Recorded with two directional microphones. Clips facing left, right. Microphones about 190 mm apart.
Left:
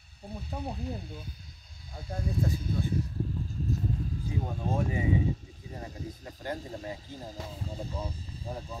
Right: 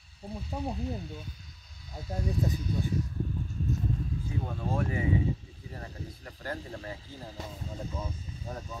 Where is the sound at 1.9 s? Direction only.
20° right (ahead or behind).